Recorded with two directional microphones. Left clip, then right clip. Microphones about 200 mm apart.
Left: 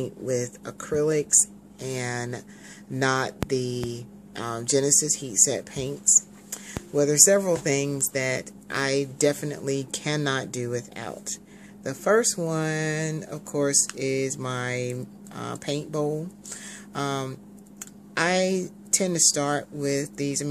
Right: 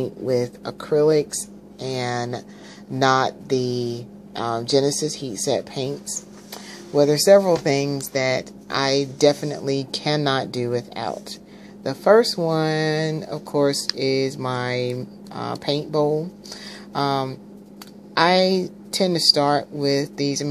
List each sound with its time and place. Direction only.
0.0 s speech: 5° left (ahead or behind)
3.6 s speech: 30° left (ahead or behind)
4.4 s a woman's voice: 5° left (ahead or behind)